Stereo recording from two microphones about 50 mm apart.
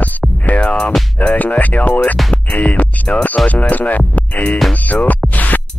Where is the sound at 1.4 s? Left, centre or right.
Left.